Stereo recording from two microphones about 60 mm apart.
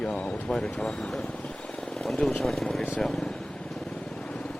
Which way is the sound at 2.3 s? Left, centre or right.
Centre.